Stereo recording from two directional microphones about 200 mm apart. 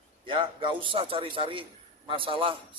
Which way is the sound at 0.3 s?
25° right (ahead or behind).